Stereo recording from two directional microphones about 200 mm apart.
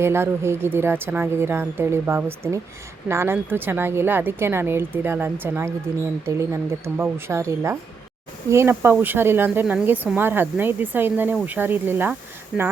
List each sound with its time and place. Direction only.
0.0 s speech: 10° right (ahead or behind)